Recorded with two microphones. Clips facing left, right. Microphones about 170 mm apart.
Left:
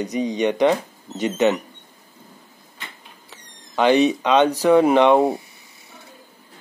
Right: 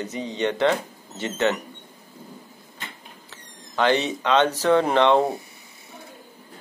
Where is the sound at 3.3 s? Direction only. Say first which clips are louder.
Left 3 dB; 15° left (ahead or behind).